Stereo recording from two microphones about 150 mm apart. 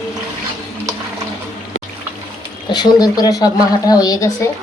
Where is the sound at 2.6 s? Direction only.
25° left (ahead or behind).